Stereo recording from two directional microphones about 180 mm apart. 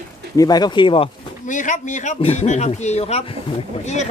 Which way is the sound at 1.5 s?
45° left (ahead or behind).